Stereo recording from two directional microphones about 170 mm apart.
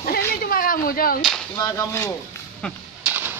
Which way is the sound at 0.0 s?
60° left (ahead or behind).